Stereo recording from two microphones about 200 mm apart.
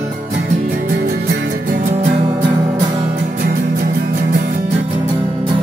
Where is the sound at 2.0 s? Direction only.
35° right (ahead or behind).